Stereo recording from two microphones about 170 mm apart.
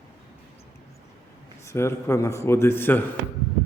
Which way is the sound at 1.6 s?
15° left (ahead or behind).